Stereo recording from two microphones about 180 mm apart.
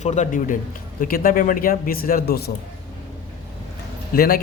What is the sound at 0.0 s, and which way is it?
Speech, 40° left (ahead or behind).